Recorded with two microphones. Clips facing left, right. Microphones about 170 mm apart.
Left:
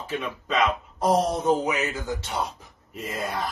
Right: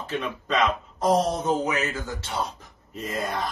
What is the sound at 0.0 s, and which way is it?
Speech, 5° left (ahead or behind).